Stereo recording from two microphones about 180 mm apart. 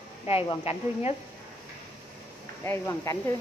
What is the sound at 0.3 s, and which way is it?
Speech, 30° left (ahead or behind).